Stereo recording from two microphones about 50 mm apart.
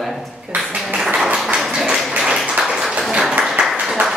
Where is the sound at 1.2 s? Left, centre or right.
Centre.